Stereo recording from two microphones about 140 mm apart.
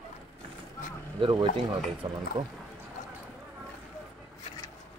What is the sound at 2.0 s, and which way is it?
Speech, 35° right (ahead or behind).